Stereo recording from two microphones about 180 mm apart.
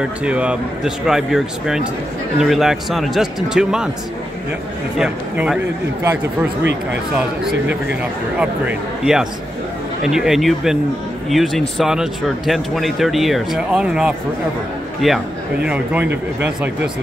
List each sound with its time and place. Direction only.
0.2 s speech: 5° right (ahead or behind)
4.9 s speech: 5° right (ahead or behind)
6.6 s speech: 75° right (ahead or behind)
8.4 s speech: 5° right (ahead or behind)